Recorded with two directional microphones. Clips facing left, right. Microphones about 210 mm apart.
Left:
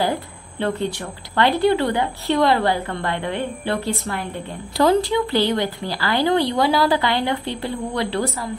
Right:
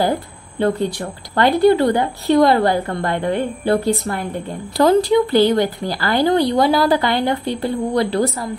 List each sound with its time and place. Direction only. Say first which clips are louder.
0.6 s a woman's voice: right 5 dB; 40° right (ahead or behind)